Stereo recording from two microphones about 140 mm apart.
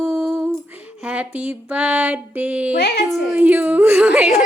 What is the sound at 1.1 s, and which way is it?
Female singing, 10° right (ahead or behind).